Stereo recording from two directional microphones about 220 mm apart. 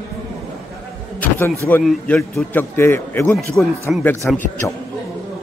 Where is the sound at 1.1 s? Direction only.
10° left (ahead or behind).